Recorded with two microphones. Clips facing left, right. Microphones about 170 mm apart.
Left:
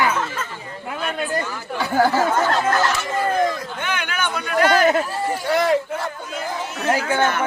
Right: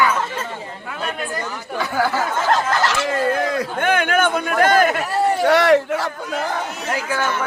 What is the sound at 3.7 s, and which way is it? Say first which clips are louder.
A man's voice: right 9 dB; 50° right (ahead or behind).